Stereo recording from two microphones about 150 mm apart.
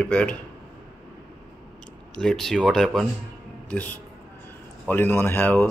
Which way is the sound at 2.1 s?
5° left (ahead or behind).